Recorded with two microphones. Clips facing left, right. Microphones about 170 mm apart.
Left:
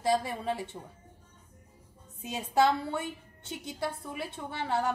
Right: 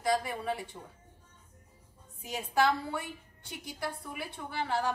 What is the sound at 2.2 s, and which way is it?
A woman's voice, 25° left (ahead or behind).